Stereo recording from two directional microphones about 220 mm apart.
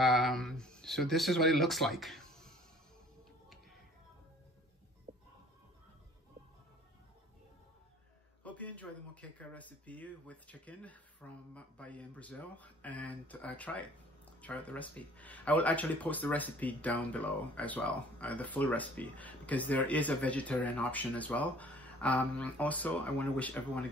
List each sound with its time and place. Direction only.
0.0 s speech: centre (ahead or behind)
5.1 s music: 30° right (ahead or behind)
8.5 s speech: 5° left (ahead or behind)